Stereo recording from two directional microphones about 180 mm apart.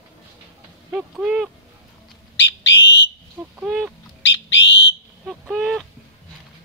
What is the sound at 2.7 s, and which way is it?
Fire alarm, 80° left.